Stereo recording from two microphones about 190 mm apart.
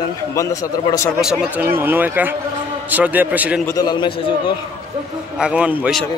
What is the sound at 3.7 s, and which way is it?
Speech, 20° left (ahead or behind).